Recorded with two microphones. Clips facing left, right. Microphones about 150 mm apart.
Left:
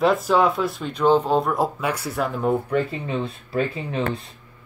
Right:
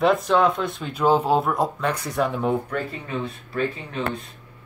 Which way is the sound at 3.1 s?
30° left (ahead or behind).